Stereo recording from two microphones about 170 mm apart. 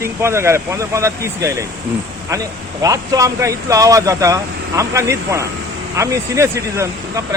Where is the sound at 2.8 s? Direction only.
20° right (ahead or behind).